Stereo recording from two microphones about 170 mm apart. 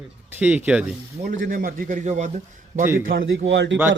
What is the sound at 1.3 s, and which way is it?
Speech, 55° right (ahead or behind).